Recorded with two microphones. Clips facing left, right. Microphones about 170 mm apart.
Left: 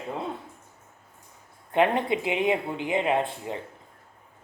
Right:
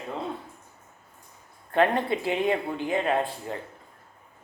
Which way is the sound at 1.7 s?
20° left (ahead or behind).